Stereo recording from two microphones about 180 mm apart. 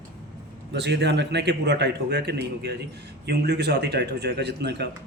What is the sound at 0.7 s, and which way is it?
A man's voice, 75° right (ahead or behind).